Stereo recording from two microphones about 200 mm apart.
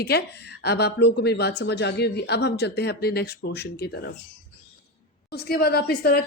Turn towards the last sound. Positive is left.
turn(degrees=50)  # may be behind; listen again after turning